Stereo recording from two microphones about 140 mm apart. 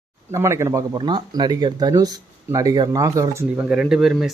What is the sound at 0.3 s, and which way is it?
Speech, 20° right (ahead or behind).